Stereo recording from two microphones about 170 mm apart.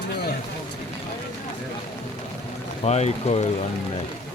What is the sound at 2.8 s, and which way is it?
Speech, 40° left (ahead or behind).